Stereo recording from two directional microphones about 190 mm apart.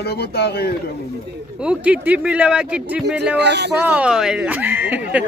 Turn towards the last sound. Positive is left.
turn(degrees=-10)  # may be behind; listen again after turning